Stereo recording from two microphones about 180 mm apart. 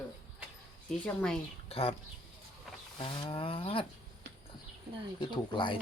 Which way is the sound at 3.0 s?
25° left (ahead or behind).